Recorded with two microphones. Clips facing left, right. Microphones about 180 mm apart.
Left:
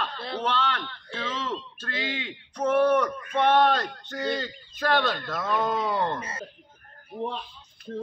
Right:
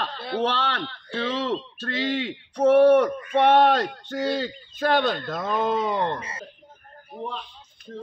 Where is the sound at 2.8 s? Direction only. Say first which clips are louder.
Right 6 dB; 50° right (ahead or behind).